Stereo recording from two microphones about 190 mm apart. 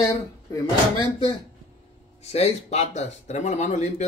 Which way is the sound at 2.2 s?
35° left (ahead or behind).